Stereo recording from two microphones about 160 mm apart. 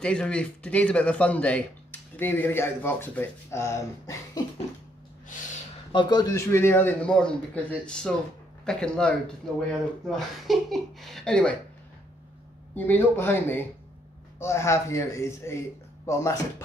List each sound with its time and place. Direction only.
0.0 s speech: 5° left (ahead or behind)
5.9 s speech: 30° left (ahead or behind); by 11.5 s 5° left (ahead or behind)
12.7 s speech: 10° left (ahead or behind)